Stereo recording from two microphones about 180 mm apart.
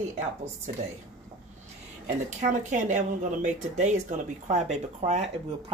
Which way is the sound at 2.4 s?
40° right (ahead or behind).